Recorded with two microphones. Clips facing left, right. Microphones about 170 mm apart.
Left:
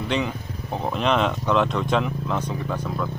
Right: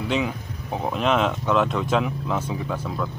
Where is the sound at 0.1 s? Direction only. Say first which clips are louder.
Even; 5° right (ahead or behind).